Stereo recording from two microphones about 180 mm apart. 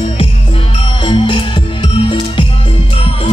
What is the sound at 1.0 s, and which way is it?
Music, 25° left (ahead or behind).